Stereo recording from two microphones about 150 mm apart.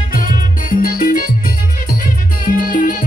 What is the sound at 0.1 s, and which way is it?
Music, 65° left (ahead or behind).